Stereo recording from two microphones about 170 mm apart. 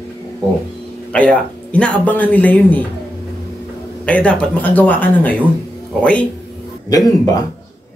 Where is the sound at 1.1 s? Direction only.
5° left (ahead or behind).